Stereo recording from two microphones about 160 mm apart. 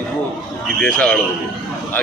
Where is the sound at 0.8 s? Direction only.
5° left (ahead or behind).